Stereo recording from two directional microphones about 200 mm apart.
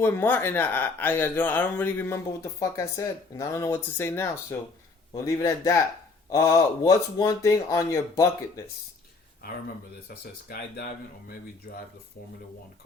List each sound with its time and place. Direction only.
0.0 s speech: 10° left (ahead or behind)
10.5 s speech: 50° left (ahead or behind)